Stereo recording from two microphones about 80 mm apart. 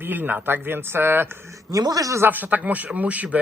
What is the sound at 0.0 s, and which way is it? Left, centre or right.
Speech, right.